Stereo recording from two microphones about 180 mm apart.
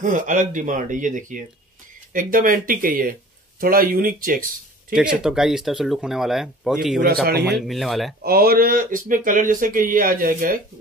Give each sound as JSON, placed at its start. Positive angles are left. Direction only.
{"t": 0.0, "sound": "speech", "side_deg": -45}
{"t": 4.9, "sound": "speech", "side_deg": -5}
{"t": 8.2, "sound": "speech", "side_deg": -60}